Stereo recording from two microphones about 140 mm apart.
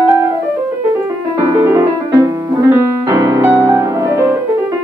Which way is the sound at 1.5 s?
20° right (ahead or behind).